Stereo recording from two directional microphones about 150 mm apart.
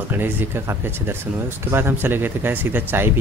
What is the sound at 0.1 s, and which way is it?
Speech, 15° right (ahead or behind).